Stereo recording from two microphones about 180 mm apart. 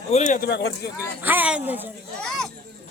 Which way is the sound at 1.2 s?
10° right (ahead or behind).